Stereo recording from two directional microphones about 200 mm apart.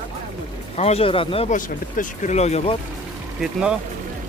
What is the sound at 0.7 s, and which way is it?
Speech, 30° left (ahead or behind).